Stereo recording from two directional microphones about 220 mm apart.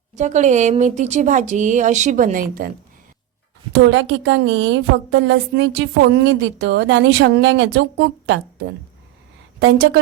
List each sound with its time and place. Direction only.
0.2 s speech: 35° right (ahead or behind)
3.7 s a woman's voice: 55° right (ahead or behind)